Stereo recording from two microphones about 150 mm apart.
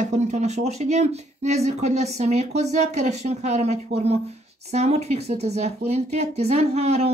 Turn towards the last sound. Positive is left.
turn(degrees=-45)  # may be behind; listen again after turning